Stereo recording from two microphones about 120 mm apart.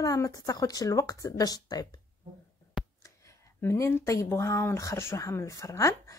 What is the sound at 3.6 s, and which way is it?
Speech, 25° left (ahead or behind).